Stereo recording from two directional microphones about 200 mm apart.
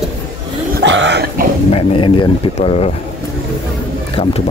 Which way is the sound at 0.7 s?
65° right (ahead or behind).